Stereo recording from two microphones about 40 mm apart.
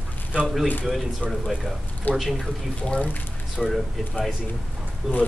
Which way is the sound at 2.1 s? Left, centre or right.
Left.